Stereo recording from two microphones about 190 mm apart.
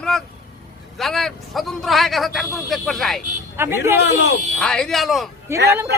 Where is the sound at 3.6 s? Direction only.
10° right (ahead or behind).